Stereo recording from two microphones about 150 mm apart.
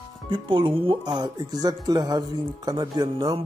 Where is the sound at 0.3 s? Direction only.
35° right (ahead or behind).